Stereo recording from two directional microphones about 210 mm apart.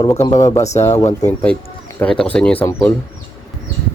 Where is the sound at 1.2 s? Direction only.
10° left (ahead or behind).